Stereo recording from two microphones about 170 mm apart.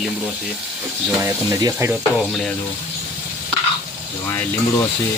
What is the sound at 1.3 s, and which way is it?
Speech, 15° right (ahead or behind).